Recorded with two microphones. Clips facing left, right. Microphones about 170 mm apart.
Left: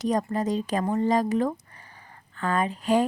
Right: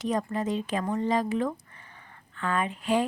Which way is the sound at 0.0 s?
40° left (ahead or behind).